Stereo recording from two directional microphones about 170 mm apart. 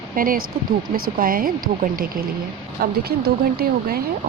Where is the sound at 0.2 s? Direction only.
55° right (ahead or behind).